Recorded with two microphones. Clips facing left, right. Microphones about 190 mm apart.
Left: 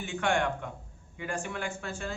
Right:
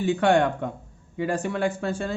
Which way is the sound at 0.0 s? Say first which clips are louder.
Right 9 dB; 35° right (ahead or behind).